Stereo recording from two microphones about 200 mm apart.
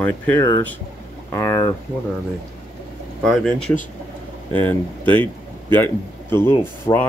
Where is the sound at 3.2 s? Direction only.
Centre (ahead or behind).